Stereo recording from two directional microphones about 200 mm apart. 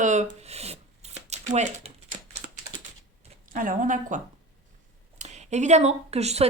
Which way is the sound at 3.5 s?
45° right (ahead or behind).